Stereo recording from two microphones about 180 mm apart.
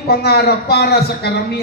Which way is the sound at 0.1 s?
60° left (ahead or behind).